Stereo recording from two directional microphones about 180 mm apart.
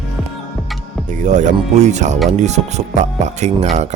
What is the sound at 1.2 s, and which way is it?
Speech, 40° right (ahead or behind).